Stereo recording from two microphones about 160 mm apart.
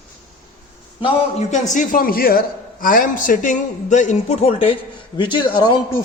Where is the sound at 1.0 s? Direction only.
45° left (ahead or behind); by 5.8 s 30° left (ahead or behind).